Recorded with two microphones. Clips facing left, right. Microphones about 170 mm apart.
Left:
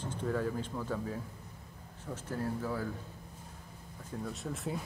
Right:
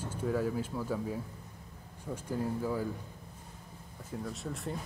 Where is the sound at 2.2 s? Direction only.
15° right (ahead or behind).